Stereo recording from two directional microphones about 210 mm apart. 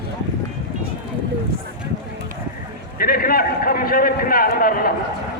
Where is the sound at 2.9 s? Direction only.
45° left (ahead or behind).